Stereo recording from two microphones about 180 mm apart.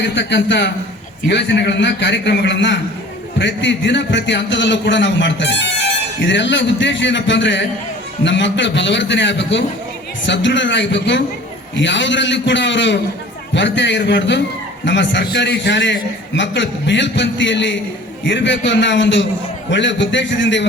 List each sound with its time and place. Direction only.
0.0 s a man's voice: 85° left
6.2 s a man's voice: 90° left
11.7 s a man's voice: 90° left